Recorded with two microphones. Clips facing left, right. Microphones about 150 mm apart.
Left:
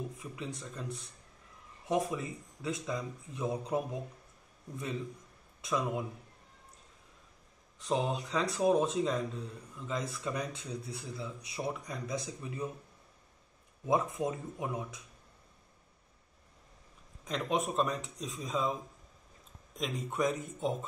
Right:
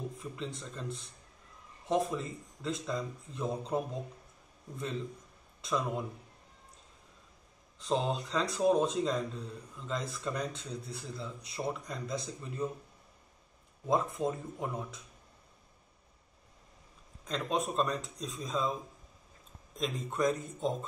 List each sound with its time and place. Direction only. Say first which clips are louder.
0.2 s speech: right 1 dB; 10° left (ahead or behind)
7.8 s speech: even; 10° left (ahead or behind)
13.8 s speech: even; 15° left (ahead or behind)
17.2 s speech: even; 10° left (ahead or behind)